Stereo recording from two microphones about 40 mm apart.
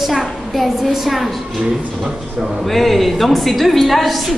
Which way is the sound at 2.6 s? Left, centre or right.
Centre.